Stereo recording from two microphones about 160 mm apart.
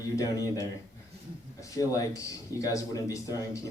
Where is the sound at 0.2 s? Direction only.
20° left (ahead or behind).